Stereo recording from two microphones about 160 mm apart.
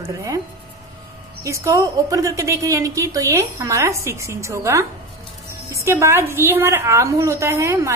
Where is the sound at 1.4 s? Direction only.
20° right (ahead or behind).